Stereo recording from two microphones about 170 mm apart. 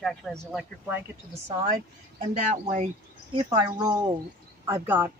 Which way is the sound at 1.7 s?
55° right (ahead or behind).